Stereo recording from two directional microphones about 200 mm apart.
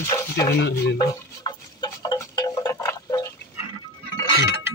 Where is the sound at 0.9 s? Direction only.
20° left (ahead or behind).